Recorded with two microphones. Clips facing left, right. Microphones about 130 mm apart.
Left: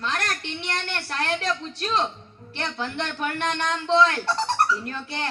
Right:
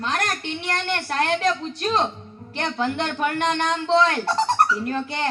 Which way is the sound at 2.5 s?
40° right (ahead or behind).